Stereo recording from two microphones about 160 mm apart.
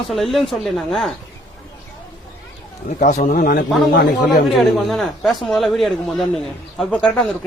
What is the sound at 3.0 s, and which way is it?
A man's voice, 55° left (ahead or behind).